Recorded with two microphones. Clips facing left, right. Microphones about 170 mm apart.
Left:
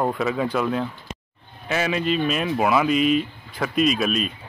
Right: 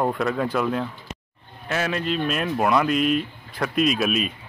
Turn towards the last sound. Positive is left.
turn(degrees=0)  # may be behind; listen again after turning